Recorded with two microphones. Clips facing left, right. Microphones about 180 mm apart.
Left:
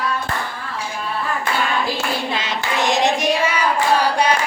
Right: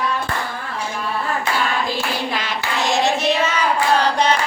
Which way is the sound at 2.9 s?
15° left (ahead or behind).